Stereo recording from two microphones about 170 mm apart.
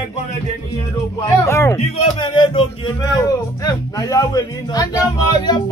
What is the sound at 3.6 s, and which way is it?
Speech, 20° left (ahead or behind).